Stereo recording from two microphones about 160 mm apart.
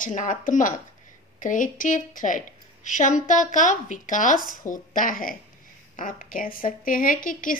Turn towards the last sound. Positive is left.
turn(degrees=60)  # may be behind; listen again after turning